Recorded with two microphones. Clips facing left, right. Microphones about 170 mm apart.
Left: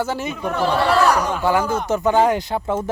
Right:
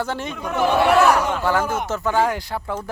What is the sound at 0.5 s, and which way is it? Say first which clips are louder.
Speech: right 2 dB; 20° right (ahead or behind).